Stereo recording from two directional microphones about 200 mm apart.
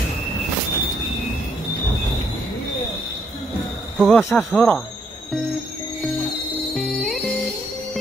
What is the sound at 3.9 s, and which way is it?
Speech, centre (ahead or behind).